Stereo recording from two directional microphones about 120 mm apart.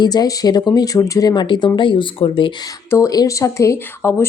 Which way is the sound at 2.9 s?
25° left (ahead or behind).